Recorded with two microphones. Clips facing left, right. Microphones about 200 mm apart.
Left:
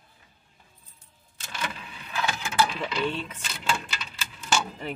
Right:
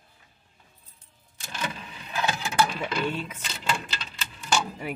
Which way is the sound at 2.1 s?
25° right (ahead or behind).